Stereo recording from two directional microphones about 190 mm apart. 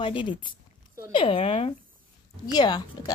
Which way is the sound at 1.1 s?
30° left (ahead or behind).